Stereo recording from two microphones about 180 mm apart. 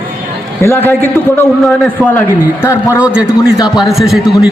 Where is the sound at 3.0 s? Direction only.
5° right (ahead or behind).